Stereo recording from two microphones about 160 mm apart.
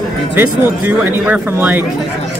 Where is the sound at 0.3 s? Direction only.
10° right (ahead or behind).